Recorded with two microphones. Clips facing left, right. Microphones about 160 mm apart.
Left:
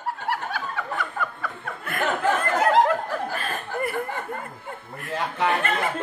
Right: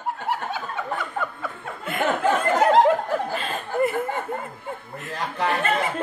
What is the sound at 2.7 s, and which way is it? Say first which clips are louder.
Snicker: right 2 dB; 25° right (ahead or behind).